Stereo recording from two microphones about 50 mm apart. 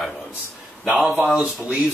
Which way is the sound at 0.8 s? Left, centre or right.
Centre.